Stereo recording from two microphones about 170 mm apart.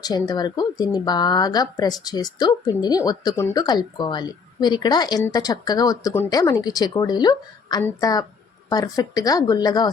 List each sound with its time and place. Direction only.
0.0 s speech: 25° left (ahead or behind)